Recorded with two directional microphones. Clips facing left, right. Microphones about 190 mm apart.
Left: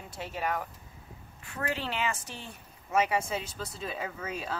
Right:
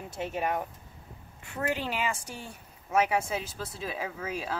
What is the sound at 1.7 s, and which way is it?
Speech, 10° right (ahead or behind).